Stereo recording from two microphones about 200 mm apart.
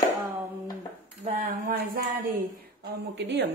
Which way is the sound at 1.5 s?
45° right (ahead or behind).